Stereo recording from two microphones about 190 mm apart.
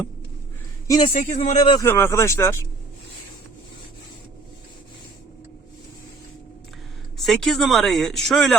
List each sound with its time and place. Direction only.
0.9 s a man's voice: 25° left (ahead or behind)
1.1 s speech: 40° left (ahead or behind); by 1.9 s 25° left (ahead or behind)
1.9 s speech: 15° left (ahead or behind)
7.2 s speech: centre (ahead or behind)